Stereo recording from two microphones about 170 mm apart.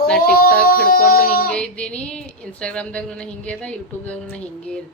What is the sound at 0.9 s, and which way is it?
Speech, 60° left (ahead or behind).